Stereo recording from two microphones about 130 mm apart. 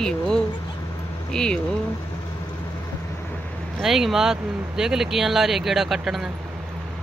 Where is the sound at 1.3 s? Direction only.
5° left (ahead or behind).